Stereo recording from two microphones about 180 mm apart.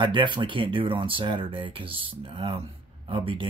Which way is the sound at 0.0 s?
25° right (ahead or behind).